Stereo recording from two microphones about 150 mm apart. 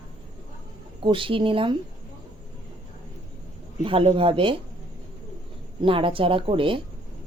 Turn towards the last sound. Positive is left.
turn(degrees=-35)  # may be behind; listen again after turning